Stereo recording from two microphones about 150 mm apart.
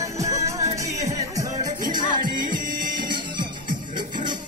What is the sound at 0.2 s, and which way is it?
Music, 20° right (ahead or behind).